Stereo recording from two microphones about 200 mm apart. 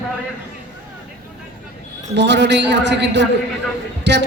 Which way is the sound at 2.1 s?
60° right (ahead or behind).